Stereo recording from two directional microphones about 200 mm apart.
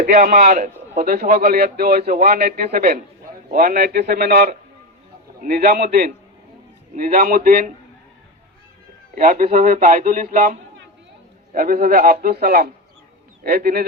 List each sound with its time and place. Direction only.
0.0 s a man's voice: 45° right (ahead or behind)
9.1 s a man's voice: 45° right (ahead or behind)